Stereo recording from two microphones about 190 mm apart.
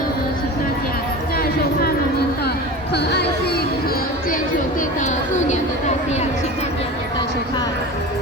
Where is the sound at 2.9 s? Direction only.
60° left (ahead or behind).